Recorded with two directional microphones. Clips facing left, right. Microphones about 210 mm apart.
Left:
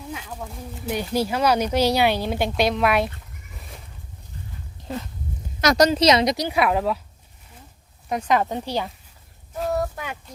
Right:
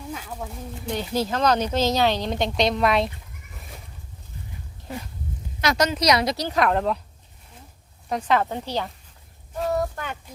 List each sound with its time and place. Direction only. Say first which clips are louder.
0.1 s speech: even; 5° left (ahead or behind)
0.9 s speech: left 2 dB; 10° left (ahead or behind)
5.5 s speech: left 5 dB; 40° left (ahead or behind); by 7.0 s 5° left (ahead or behind)
8.1 s speech: left 1 dB; 15° left (ahead or behind)
9.5 s a sound: even; centre (ahead or behind)